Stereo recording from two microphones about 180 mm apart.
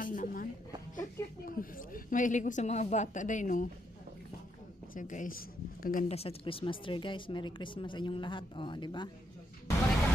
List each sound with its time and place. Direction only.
0.0 s a sound: 50° left (ahead or behind)
0.9 s a woman's voice: 50° left (ahead or behind)
4.9 s a woman's voice: 45° left (ahead or behind)
6.0 s speech: 35° left (ahead or behind)